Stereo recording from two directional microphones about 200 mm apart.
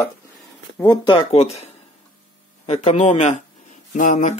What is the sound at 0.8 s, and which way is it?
Speech, 20° left (ahead or behind).